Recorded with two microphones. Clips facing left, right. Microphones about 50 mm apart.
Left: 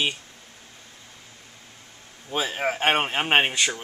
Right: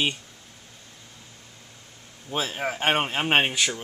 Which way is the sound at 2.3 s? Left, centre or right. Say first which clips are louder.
Left 2 dB; centre.